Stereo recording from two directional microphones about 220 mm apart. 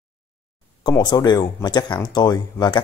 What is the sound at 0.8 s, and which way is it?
Speech, 20° left (ahead or behind).